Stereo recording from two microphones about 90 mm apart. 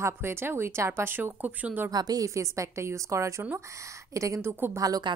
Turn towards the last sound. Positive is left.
turn(degrees=-45)  # may be behind; listen again after turning